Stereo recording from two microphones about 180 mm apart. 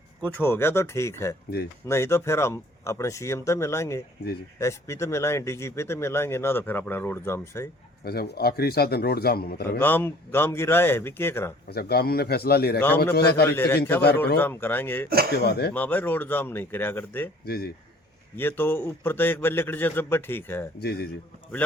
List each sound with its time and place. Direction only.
0.3 s speech: 10° left (ahead or behind)
8.0 s speech: 60° left (ahead or behind)
9.7 s speech: 10° left (ahead or behind)
11.7 s speech: 60° left (ahead or behind)
13.5 s speech: 15° left (ahead or behind)
15.3 s speech: 65° left (ahead or behind)
15.7 s speech: 10° left (ahead or behind)
17.4 s speech: 60° left (ahead or behind)
18.3 s speech: 10° left (ahead or behind)
20.7 s speech: 60° left (ahead or behind)